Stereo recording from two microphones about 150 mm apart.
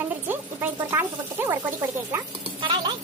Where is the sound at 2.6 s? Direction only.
30° right (ahead or behind).